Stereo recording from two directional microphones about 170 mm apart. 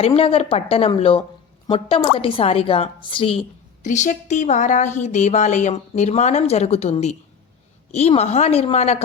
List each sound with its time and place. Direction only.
0.0 s a woman's voice: 35° left (ahead or behind)
3.8 s a woman's voice: 45° left (ahead or behind)